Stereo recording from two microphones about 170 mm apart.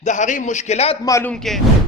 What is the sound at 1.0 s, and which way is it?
Speech, 20° left (ahead or behind).